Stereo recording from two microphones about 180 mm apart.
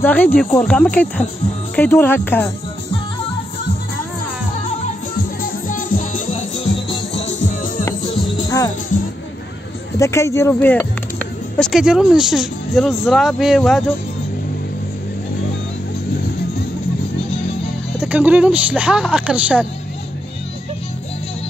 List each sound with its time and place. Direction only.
0.0 s speech: 10° left (ahead or behind)
5.4 s music: 50° left (ahead or behind)
8.5 s music: 20° left (ahead or behind)
9.9 s speech: 15° left (ahead or behind); by 13.8 s centre (ahead or behind)
18.0 s speech: 5° right (ahead or behind)